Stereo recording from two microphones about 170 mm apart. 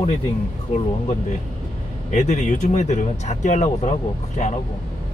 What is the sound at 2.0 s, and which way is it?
Speech, 45° left (ahead or behind).